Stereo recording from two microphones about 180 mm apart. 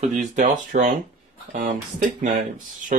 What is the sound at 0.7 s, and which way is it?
Speech, 45° right (ahead or behind).